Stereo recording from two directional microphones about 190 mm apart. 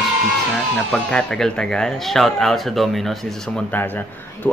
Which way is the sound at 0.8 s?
5° left (ahead or behind).